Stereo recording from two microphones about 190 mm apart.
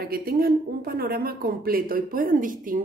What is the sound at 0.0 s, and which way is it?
A woman's voice, 55° right (ahead or behind).